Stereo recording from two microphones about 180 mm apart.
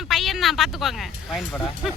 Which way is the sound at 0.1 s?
Centre (ahead or behind).